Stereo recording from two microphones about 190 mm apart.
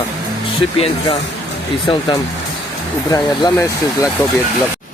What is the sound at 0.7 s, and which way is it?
Speech, 30° left (ahead or behind).